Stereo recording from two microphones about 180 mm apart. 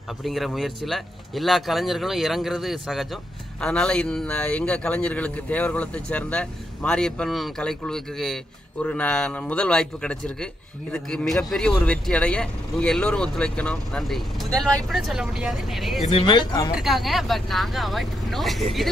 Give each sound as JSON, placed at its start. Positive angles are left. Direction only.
{"t": 0.2, "sound": "a man's voice", "side_deg": 0}
{"t": 16.1, "sound": "speech", "side_deg": 35}
{"t": 16.7, "sound": "a man's voice", "side_deg": 0}